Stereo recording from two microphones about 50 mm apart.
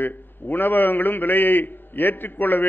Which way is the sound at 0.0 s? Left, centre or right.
Left.